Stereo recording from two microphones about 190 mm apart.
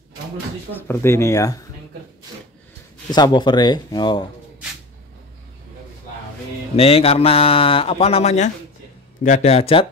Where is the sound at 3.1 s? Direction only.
20° left (ahead or behind).